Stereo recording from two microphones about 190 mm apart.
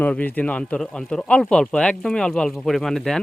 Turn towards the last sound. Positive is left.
turn(degrees=0)  # may be behind; listen again after turning